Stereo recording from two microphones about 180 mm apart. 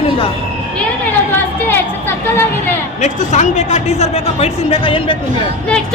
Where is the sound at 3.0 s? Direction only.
40° left (ahead or behind).